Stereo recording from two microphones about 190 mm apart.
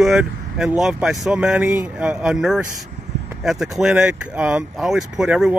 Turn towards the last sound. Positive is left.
turn(degrees=-5)  # may be behind; listen again after turning